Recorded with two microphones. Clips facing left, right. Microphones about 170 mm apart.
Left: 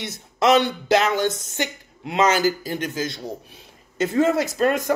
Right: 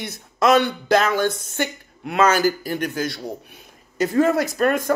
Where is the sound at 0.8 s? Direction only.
50° right (ahead or behind).